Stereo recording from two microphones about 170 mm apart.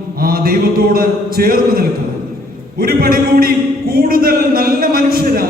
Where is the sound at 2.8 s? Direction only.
60° right (ahead or behind).